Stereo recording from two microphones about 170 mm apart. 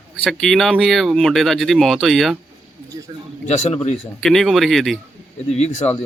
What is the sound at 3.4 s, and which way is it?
Speech, 40° left (ahead or behind).